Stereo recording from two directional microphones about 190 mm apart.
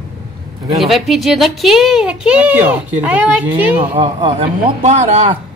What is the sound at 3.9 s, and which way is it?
Speech, 30° right (ahead or behind).